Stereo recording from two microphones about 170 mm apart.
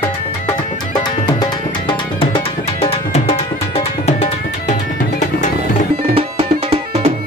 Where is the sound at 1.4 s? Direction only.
30° left (ahead or behind).